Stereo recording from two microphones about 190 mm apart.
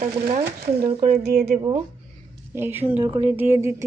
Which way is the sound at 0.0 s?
35° right (ahead or behind).